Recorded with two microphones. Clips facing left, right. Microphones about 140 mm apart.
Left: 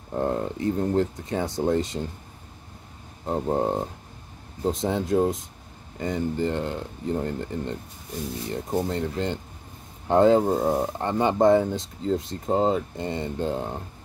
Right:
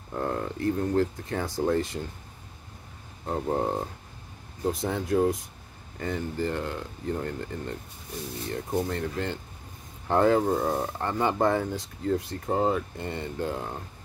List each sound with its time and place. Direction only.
0.1 s speech: 25° left (ahead or behind)
3.3 s speech: 20° left (ahead or behind)